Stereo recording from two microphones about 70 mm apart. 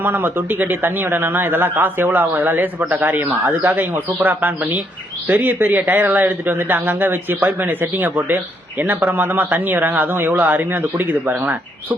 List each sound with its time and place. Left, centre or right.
0.0 s a man's voice: right